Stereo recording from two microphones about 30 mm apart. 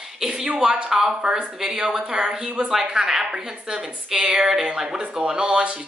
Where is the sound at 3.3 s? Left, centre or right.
Right.